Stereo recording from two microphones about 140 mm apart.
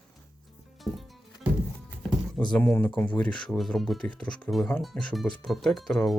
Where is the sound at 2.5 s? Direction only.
15° left (ahead or behind).